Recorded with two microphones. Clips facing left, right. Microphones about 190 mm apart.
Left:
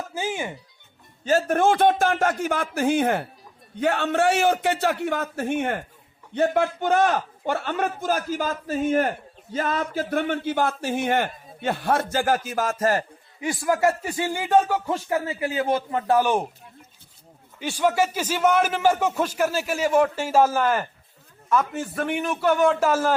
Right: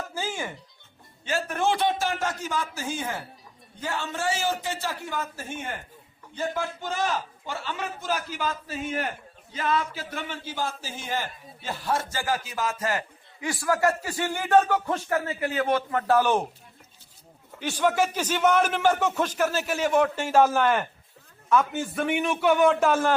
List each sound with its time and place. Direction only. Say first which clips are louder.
0.1 s speech: left 4 dB; 20° left (ahead or behind)
1.2 s a man's voice: left 7 dB; 40° left (ahead or behind)
13.4 s speech: left 3 dB; 20° left (ahead or behind)
17.6 s a man's voice: left 2 dB; 10° left (ahead or behind)